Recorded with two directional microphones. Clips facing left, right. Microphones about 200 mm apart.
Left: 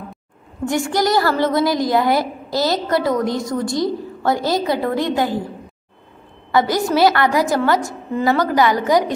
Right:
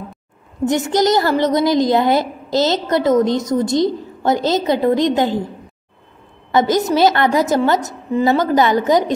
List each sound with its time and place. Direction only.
0.7 s a woman's voice: 20° right (ahead or behind)
6.5 s a woman's voice: 20° right (ahead or behind)